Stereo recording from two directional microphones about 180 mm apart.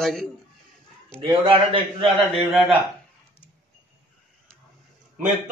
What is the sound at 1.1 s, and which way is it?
Speech, 30° right (ahead or behind).